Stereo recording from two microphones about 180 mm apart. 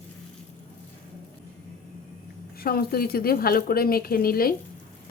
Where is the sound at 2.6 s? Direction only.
55° left (ahead or behind).